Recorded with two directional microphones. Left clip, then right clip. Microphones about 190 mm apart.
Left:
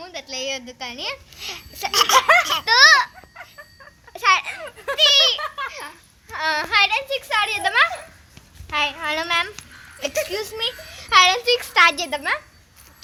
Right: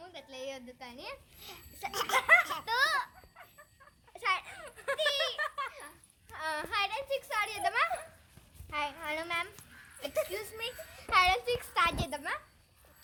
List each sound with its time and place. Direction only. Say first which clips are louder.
0.0 s a sound: left 14 dB; 20° left (ahead or behind)
1.9 s laughter: left 18 dB; 15° right (ahead or behind)
2.1 s baby laughter: left 9 dB; 35° left (ahead or behind)
2.6 s baby laughter: left 17 dB; 15° left (ahead or behind)
4.1 s babbling: left 15 dB; 15° left (ahead or behind)
4.4 s a sound: left 10 dB; 25° left (ahead or behind)
5.4 s a sound: left 8 dB; 5° left (ahead or behind)
6.3 s a child's voice: left 15 dB; 15° left (ahead or behind)
11.9 s a child's voice: left 12 dB; centre (ahead or behind)